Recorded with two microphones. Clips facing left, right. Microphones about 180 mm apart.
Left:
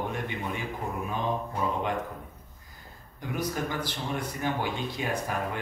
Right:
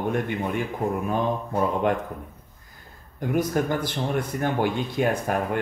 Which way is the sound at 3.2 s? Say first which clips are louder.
Right 8 dB; 50° right (ahead or behind).